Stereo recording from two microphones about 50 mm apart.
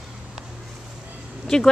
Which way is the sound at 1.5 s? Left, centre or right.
Centre.